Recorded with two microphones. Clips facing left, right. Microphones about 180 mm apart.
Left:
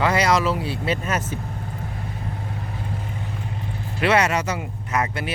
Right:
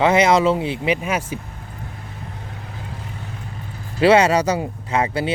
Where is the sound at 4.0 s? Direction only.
30° right (ahead or behind).